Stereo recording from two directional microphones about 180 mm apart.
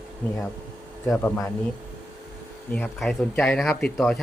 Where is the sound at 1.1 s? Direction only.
10° left (ahead or behind).